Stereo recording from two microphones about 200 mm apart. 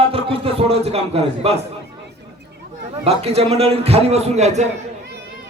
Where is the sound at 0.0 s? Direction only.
30° right (ahead or behind).